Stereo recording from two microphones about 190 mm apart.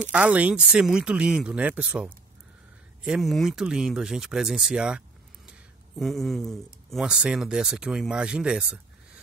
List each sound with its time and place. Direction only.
0.1 s speech: 5° right (ahead or behind)